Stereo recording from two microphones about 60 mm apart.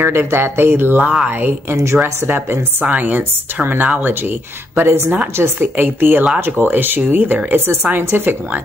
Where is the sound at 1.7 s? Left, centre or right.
Right.